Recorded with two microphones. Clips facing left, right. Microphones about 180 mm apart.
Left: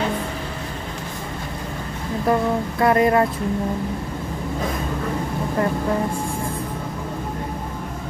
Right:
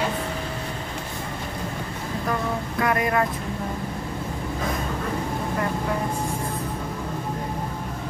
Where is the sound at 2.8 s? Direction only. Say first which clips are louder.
Left 6 dB; 30° left (ahead or behind).